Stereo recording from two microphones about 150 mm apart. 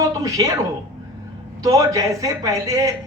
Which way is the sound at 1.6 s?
25° right (ahead or behind).